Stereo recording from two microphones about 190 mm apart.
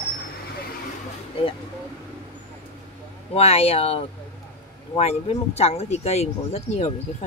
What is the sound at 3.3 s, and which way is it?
Speech, 30° left (ahead or behind).